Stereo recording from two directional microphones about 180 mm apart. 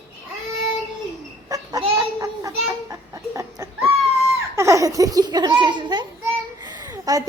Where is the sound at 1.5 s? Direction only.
20° right (ahead or behind).